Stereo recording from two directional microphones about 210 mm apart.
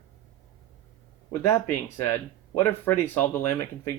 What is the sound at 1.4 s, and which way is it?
Speech, 10° left (ahead or behind).